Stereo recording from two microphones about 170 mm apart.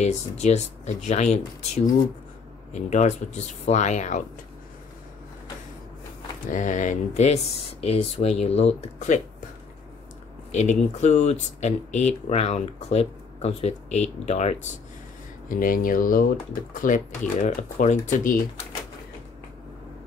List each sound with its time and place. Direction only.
0.0 s speech: 40° left (ahead or behind)
2.7 s speech: 45° left (ahead or behind)
6.4 s speech: 50° left (ahead or behind)
10.5 s speech: 45° left (ahead or behind)
15.4 s speech: 55° left (ahead or behind)